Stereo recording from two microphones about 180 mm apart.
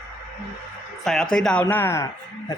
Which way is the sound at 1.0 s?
Centre (ahead or behind).